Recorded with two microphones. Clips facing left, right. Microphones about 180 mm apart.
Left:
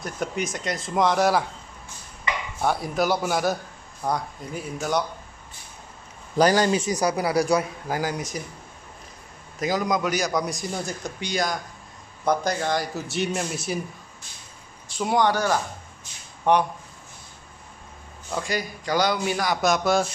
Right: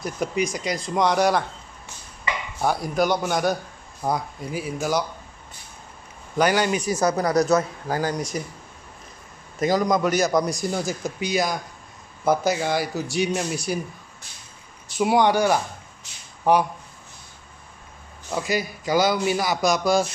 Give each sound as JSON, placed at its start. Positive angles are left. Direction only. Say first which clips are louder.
{"t": 0.0, "sound": "a man's voice", "louder": "right 4 dB", "side_deg": 0}
{"t": 2.6, "sound": "a man's voice", "louder": "right 2 dB", "side_deg": 0}
{"t": 6.3, "sound": "speech", "louder": "left 1 dB", "side_deg": 35}
{"t": 6.8, "sound": "speech", "louder": "right 2 dB", "side_deg": 15}
{"t": 9.6, "sound": "a man's voice", "louder": "right 4 dB", "side_deg": 0}
{"t": 15.0, "sound": "a man's voice", "louder": "right 3 dB", "side_deg": -10}
{"t": 18.3, "sound": "a man's voice", "louder": "right 3 dB", "side_deg": -5}